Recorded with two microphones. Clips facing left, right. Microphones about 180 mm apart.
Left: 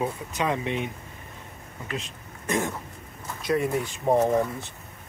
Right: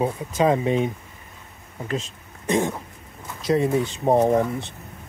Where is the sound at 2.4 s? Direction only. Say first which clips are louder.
Right 5 dB; 25° right (ahead or behind).